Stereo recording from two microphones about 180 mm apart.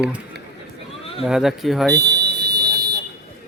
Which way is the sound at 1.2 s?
Centre (ahead or behind).